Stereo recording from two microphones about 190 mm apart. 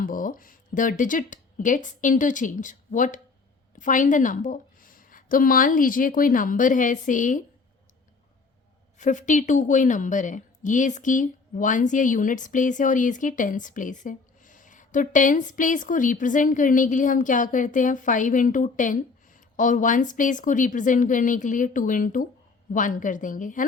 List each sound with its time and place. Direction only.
0.0 s a woman's voice: 45° left (ahead or behind)
9.0 s a woman's voice: 40° left (ahead or behind)